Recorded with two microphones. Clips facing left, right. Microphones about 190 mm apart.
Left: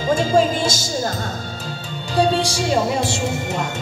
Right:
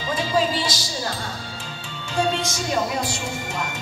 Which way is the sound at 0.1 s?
45° left (ahead or behind).